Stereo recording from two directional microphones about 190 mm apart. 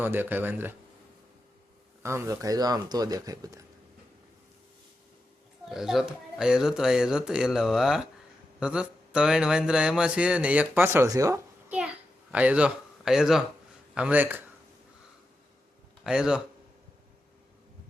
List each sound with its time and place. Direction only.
0.0 s speech: 10° right (ahead or behind)
2.0 s speech: 15° right (ahead or behind)
5.6 s speech: centre (ahead or behind)
12.3 s speech: 5° right (ahead or behind)
16.0 s speech: 5° right (ahead or behind)